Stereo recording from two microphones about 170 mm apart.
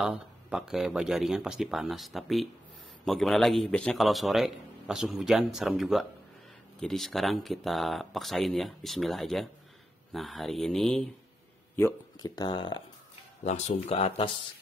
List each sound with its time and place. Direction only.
0.0 s a man's voice: 5° right (ahead or behind)
11.7 s a sound: 15° left (ahead or behind)
12.4 s speech: 25° left (ahead or behind)
13.4 s speech: 40° left (ahead or behind)